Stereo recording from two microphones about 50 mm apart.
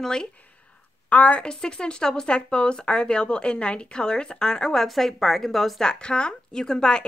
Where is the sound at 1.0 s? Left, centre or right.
Left; by 5.9 s centre.